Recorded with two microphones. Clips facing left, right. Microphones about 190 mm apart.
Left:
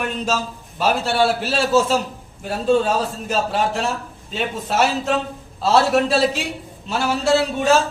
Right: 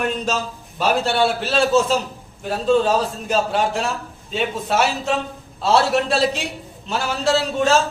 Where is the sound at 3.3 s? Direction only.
Centre (ahead or behind).